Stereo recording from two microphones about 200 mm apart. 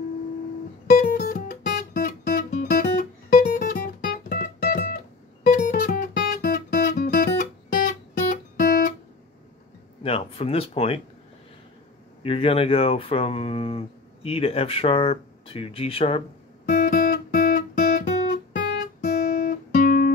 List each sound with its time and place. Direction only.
0.8 s music: 50° left (ahead or behind)
10.0 s a sound: 30° left (ahead or behind)
12.2 s speech: 30° left (ahead or behind)
16.6 s guitar: 40° left (ahead or behind)